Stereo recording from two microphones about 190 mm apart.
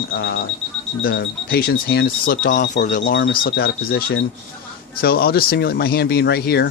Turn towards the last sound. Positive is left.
turn(degrees=55)  # may be behind; listen again after turning